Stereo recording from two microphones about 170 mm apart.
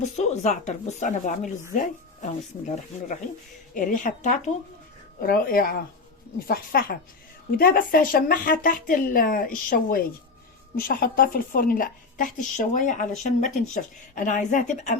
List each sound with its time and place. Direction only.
0.2 s a woman's voice: 45° left (ahead or behind)
5.2 s a woman's voice: 60° left (ahead or behind)